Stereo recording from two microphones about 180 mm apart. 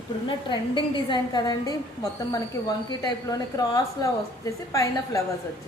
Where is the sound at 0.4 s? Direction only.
25° left (ahead or behind).